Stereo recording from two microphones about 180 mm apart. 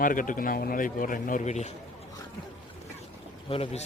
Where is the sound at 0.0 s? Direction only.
50° left (ahead or behind).